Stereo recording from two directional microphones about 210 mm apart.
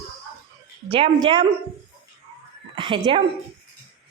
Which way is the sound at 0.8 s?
25° right (ahead or behind).